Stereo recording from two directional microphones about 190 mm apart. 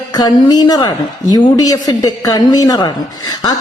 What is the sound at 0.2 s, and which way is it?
A woman's voice, 20° left (ahead or behind).